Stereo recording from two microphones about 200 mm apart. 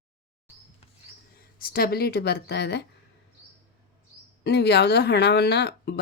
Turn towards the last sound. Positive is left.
turn(degrees=55)  # may be behind; listen again after turning